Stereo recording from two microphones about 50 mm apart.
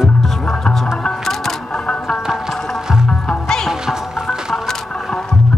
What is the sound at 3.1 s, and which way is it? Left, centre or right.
Music, centre.